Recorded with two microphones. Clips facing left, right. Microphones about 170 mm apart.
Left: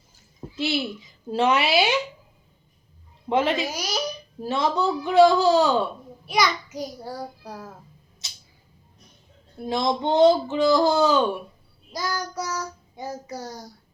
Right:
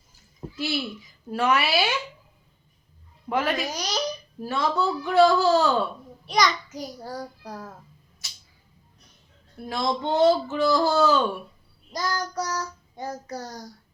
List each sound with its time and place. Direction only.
0.5 s a child's voice: 20° left (ahead or behind)
3.2 s a child's voice: 25° left (ahead or behind)
3.7 s a child's voice: 5° left (ahead or behind)
4.4 s child singing: 20° left (ahead or behind)
6.2 s a child's voice: 10° left (ahead or behind)
7.0 s child singing: 10° left (ahead or behind)
8.2 s a sound: 20° left (ahead or behind)
9.6 s child singing: 20° left (ahead or behind)